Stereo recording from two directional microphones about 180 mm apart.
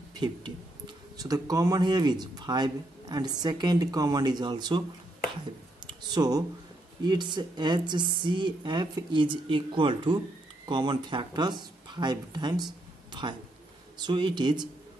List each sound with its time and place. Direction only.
1.1 s speech: 20° right (ahead or behind)
5.9 s speech: 20° right (ahead or behind)